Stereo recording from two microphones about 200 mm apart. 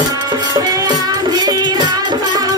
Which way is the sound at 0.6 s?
20° right (ahead or behind).